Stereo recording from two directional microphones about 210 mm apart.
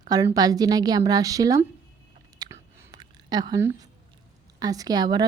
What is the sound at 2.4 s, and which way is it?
Whispering, 15° right (ahead or behind).